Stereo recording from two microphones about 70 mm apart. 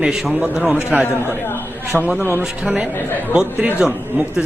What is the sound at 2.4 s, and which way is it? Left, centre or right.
A man's voice, centre.